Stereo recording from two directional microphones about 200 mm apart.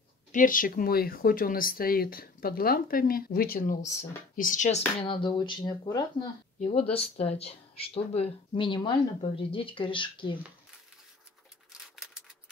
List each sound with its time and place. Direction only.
0.3 s speech: 40° left (ahead or behind); by 6.2 s 20° left (ahead or behind)
6.7 s speech: 30° left (ahead or behind)
11.9 s scissors: centre (ahead or behind)